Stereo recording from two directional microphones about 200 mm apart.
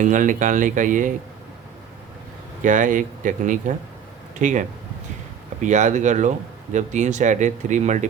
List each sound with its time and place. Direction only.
0.0 s speech: 40° right (ahead or behind)
2.6 s speech: 40° right (ahead or behind)
5.6 s speech: 35° right (ahead or behind)